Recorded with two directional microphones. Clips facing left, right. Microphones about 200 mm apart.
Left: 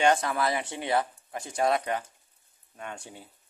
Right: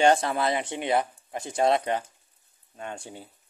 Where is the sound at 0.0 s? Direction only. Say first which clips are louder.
Right 3 dB; 30° right (ahead or behind).